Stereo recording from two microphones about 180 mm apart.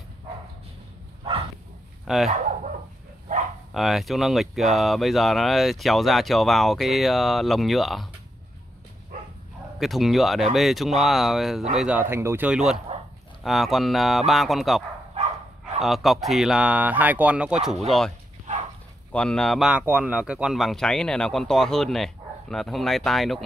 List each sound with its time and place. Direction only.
2.2 s dog: 40° right (ahead or behind)
3.7 s speech: centre (ahead or behind)
9.8 s speech: centre (ahead or behind)
15.8 s speech: centre (ahead or behind)
19.1 s speech: 5° left (ahead or behind)